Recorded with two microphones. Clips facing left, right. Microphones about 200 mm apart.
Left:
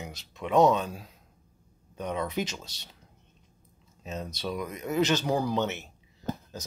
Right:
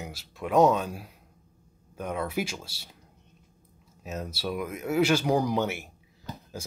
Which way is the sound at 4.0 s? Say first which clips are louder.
Right 1 dB; 5° right (ahead or behind).